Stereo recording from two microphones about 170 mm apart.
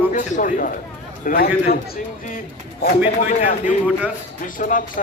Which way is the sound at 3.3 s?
45° left (ahead or behind).